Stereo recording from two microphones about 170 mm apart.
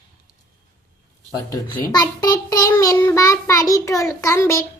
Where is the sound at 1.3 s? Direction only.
20° left (ahead or behind).